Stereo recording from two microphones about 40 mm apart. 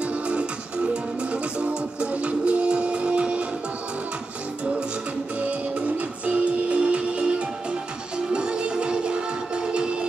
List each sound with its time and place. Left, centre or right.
0.0 s music: right
5.4 s music: right